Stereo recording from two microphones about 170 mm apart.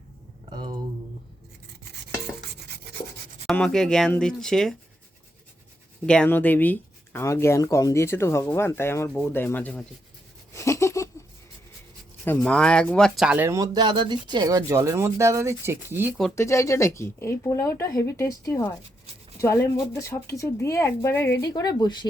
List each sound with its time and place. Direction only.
2.5 s rub: 75° right (ahead or behind)
3.4 s speech: 5° left (ahead or behind)
6.1 s speech: 10° left (ahead or behind)
10.5 s a sound: 15° left (ahead or behind)
12.2 s speech: 10° left (ahead or behind); by 16.1 s 15° right (ahead or behind)
16.3 s speech: 15° left (ahead or behind)